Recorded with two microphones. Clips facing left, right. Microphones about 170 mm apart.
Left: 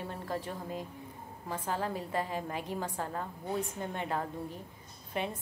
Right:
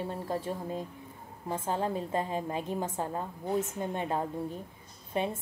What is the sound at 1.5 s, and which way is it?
A woman's voice, 25° right (ahead or behind).